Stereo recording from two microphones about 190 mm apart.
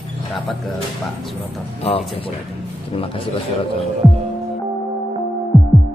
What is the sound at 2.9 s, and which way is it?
Speech, 30° left (ahead or behind).